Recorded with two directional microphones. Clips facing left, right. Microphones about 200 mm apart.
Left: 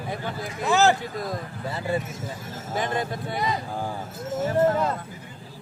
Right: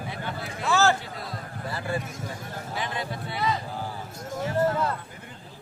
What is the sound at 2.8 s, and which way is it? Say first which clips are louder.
Speech: left 6 dB; 45° left (ahead or behind).